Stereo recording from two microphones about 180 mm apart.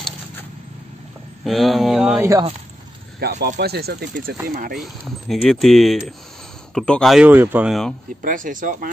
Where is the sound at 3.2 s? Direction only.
65° right (ahead or behind).